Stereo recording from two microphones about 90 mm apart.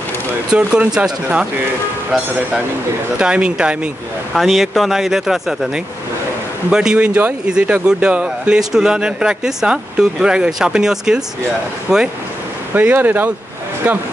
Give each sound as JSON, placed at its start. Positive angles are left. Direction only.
{"t": 0.5, "sound": "speech", "side_deg": -10}
{"t": 3.2, "sound": "speech", "side_deg": -10}
{"t": 6.7, "sound": "speech", "side_deg": -10}
{"t": 12.7, "sound": "speech", "side_deg": -20}